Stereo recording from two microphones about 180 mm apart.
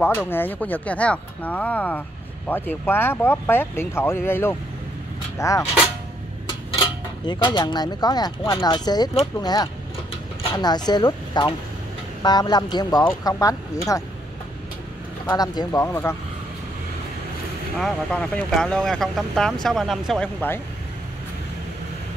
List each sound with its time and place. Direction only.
0.0 s speech: 10° left (ahead or behind)
7.2 s speech: 25° left (ahead or behind)
15.2 s speech: 20° left (ahead or behind)
17.7 s speech: 5° left (ahead or behind)